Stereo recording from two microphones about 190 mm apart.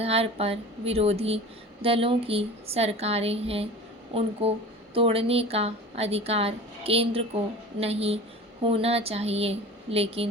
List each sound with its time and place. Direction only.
0.0 s a woman's voice: 30° right (ahead or behind)